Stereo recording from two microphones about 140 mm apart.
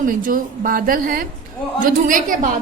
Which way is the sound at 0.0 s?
80° right.